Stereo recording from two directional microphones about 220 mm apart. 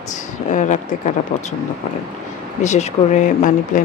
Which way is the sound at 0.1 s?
35° left (ahead or behind).